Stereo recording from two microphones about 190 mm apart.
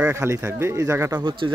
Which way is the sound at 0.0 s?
15° right (ahead or behind).